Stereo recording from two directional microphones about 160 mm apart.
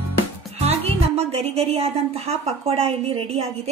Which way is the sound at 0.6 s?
40° right (ahead or behind).